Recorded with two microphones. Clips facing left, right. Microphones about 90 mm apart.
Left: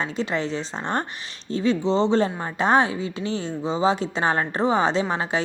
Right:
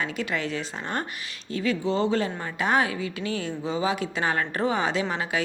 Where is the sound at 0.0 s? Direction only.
25° left (ahead or behind).